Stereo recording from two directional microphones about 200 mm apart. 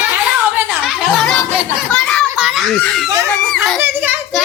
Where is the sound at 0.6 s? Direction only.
Centre (ahead or behind).